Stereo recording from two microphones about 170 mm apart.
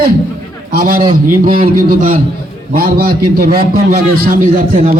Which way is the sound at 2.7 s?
60° right (ahead or behind).